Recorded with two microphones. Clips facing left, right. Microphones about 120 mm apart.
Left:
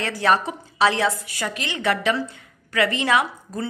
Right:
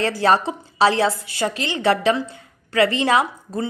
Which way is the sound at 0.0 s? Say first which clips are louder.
Right 3 dB; 30° right (ahead or behind).